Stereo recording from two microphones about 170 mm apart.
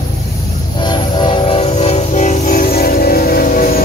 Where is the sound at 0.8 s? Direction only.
25° left (ahead or behind).